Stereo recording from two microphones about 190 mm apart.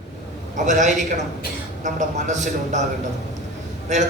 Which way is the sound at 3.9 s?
40° right (ahead or behind).